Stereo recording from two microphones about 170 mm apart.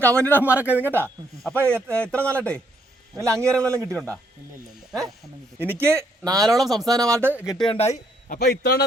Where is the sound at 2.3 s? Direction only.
5° left (ahead or behind).